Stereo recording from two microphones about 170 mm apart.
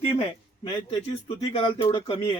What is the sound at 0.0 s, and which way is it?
Speech, 35° left (ahead or behind).